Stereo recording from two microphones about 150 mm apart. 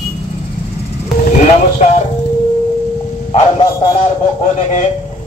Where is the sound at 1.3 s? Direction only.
50° left (ahead or behind).